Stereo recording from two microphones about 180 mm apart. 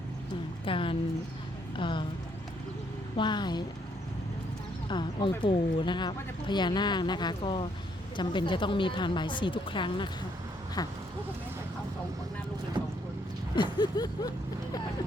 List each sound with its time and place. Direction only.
0.6 s a sound: 30° left (ahead or behind)
1.7 s music: 25° left (ahead or behind)
3.2 s speech: 25° left (ahead or behind)
4.9 s speech: 25° left (ahead or behind)
13.6 s speech: 25° left (ahead or behind)